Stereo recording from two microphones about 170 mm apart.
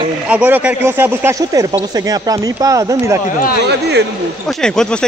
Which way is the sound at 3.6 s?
85° right.